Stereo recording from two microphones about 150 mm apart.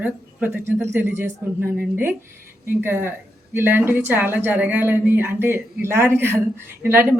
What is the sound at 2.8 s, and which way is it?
Speech, 15° right (ahead or behind).